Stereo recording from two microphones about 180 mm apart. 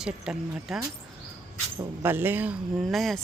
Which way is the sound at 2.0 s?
10° right (ahead or behind).